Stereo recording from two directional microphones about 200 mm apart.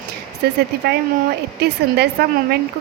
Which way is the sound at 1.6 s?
55° right (ahead or behind).